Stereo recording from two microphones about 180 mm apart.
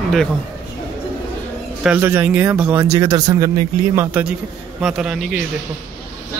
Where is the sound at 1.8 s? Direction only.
10° right (ahead or behind).